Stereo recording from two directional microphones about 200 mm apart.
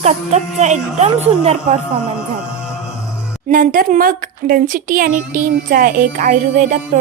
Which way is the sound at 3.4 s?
40° right (ahead or behind).